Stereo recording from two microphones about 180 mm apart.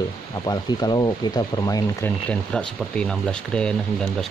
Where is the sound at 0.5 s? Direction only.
20° left (ahead or behind).